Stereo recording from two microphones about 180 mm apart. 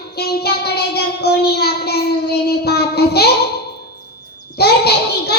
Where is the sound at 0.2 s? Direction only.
60° left (ahead or behind).